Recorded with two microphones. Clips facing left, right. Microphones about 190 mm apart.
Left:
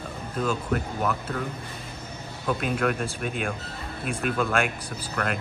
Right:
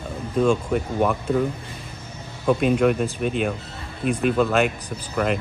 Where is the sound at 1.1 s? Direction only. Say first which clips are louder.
Right 7 dB; 15° right (ahead or behind).